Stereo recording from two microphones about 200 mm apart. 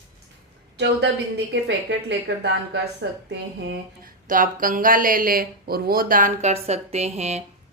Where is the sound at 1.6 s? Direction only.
60° right (ahead or behind).